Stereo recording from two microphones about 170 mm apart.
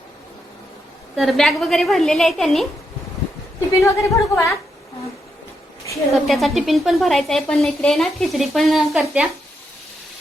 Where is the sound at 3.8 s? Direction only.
15° left (ahead or behind).